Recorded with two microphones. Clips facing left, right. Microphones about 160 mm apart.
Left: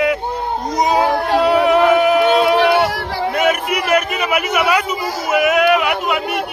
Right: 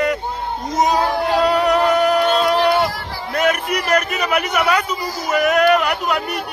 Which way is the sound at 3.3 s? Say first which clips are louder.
Even; 5° left (ahead or behind).